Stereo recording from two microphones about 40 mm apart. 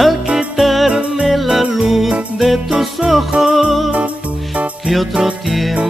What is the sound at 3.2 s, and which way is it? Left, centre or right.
Music, centre.